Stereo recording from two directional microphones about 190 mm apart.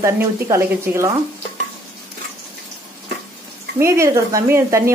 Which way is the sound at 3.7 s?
15° right (ahead or behind).